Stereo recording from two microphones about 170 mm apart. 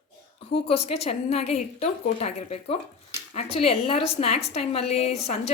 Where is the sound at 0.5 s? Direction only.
35° left (ahead or behind).